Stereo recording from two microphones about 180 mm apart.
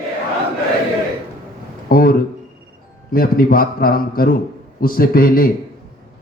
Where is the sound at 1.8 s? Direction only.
55° left (ahead or behind).